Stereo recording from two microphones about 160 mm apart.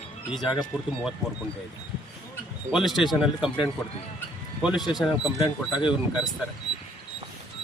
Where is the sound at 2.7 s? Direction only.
Centre (ahead or behind).